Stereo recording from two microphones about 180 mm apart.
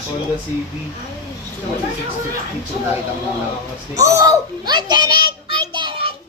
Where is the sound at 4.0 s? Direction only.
20° right (ahead or behind).